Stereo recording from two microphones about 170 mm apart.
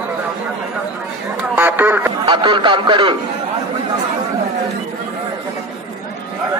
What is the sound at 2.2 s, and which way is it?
Speech, 30° right (ahead or behind).